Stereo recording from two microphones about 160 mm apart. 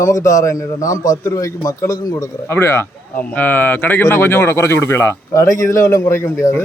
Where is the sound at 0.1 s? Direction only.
20° left (ahead or behind).